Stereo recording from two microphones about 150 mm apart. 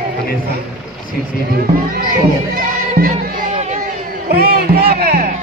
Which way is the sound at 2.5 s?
75° right (ahead or behind).